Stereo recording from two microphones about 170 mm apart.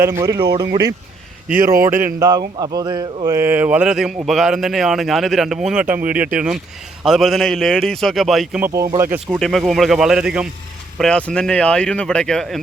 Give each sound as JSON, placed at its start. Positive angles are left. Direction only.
{"t": 0.0, "sound": "speech", "side_deg": -15}
{"t": 1.5, "sound": "speech", "side_deg": -55}
{"t": 2.1, "sound": "speech", "side_deg": -20}
{"t": 3.2, "sound": "speech", "side_deg": -15}
{"t": 8.6, "sound": "speech", "side_deg": -20}
{"t": 9.2, "sound": "speech", "side_deg": 0}